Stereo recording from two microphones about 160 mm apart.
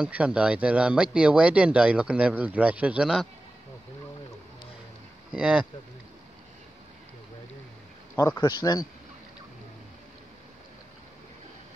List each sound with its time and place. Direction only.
0.0 s speech: 5° right (ahead or behind)
5.3 s speech: 5° right (ahead or behind)
8.2 s speech: 15° left (ahead or behind)
8.5 s speech: 25° left (ahead or behind)